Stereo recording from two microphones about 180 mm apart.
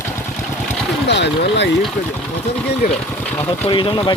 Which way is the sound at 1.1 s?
75° left (ahead or behind).